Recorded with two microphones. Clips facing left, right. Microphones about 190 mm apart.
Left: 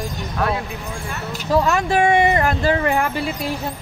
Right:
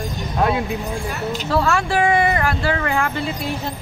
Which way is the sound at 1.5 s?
15° left (ahead or behind).